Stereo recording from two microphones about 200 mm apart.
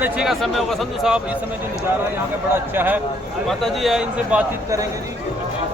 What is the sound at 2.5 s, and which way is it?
A man's voice, 10° right (ahead or behind).